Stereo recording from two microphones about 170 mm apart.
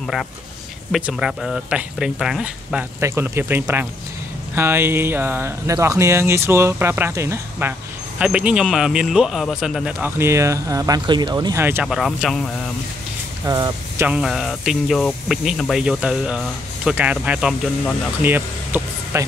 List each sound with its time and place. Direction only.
0.0 s a man's voice: centre (ahead or behind)
11.9 s speech: centre (ahead or behind)
13.5 s speech: 20° right (ahead or behind)
14.0 s speech: 5° right (ahead or behind)